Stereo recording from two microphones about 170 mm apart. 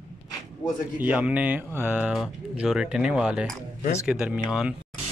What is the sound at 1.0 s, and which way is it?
Speech, 10° right (ahead or behind).